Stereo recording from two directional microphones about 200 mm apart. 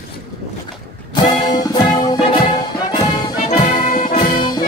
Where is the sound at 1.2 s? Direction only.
20° left (ahead or behind).